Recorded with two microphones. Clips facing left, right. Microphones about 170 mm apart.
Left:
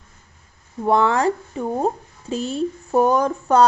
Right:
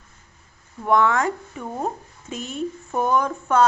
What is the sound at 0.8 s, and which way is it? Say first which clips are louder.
A woman's voice: left 2 dB; 30° left (ahead or behind).